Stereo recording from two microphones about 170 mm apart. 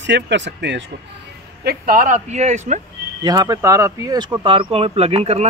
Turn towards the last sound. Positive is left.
turn(degrees=-35)  # may be behind; listen again after turning